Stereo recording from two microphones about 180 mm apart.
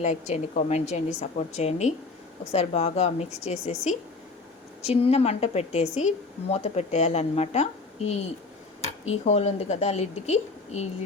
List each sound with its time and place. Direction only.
0.0 s speech: 40° left (ahead or behind)